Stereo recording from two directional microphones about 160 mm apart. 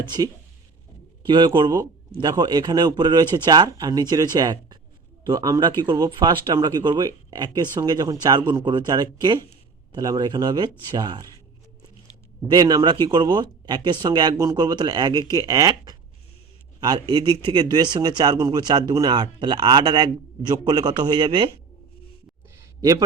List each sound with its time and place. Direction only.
0.0 s speech: 25° right (ahead or behind)
12.4 s speech: 25° right (ahead or behind)
22.8 s speech: 20° right (ahead or behind)